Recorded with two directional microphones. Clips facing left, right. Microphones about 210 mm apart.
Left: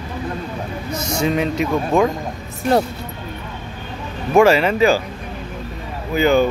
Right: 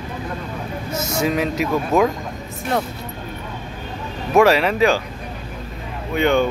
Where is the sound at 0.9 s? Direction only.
25° right (ahead or behind).